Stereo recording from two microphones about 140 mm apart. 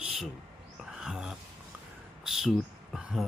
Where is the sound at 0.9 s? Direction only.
5° right (ahead or behind).